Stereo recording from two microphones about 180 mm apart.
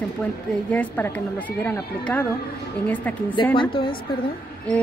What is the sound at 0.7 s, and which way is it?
Speech, 10° left (ahead or behind).